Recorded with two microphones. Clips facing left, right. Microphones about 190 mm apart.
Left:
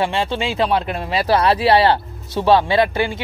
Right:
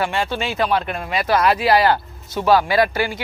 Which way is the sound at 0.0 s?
25° left (ahead or behind).